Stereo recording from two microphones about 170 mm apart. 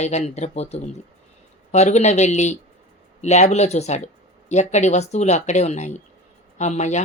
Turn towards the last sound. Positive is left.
turn(degrees=45)  # may be behind; listen again after turning